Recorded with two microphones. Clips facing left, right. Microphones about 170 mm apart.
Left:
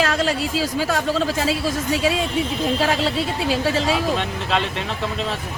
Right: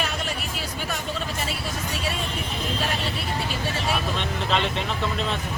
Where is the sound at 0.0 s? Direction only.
90° left.